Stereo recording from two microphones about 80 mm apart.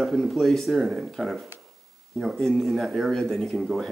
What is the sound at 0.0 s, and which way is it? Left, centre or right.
Speech, centre.